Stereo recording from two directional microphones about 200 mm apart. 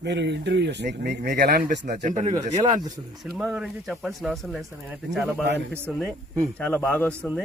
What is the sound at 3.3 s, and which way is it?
Speech, 5° right (ahead or behind).